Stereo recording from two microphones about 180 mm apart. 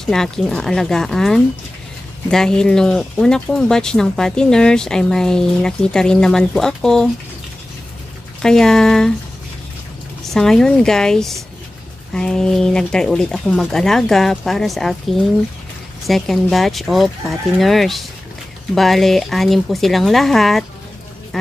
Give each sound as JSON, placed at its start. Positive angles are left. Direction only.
{"t": 0.0, "sound": "speech", "side_deg": 0}
{"t": 8.4, "sound": "speech", "side_deg": 5}
{"t": 10.2, "sound": "speech", "side_deg": 0}